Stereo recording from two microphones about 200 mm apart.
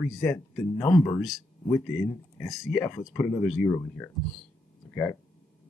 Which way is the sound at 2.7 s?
15° left (ahead or behind).